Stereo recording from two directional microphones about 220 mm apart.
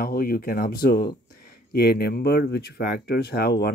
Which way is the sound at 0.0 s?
40° left (ahead or behind).